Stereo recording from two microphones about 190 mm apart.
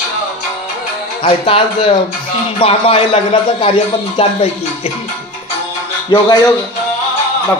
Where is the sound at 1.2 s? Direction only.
30° left (ahead or behind).